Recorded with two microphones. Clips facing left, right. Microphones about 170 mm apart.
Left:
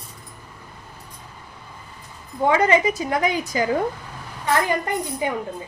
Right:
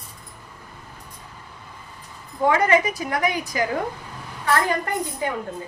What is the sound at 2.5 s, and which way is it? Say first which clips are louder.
A woman's voice: left 1 dB; 20° left (ahead or behind).